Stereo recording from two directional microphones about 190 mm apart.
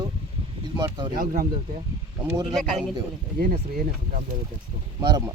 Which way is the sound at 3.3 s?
50° right (ahead or behind).